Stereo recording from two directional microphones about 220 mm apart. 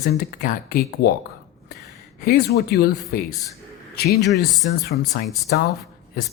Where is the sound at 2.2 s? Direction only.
45° left (ahead or behind).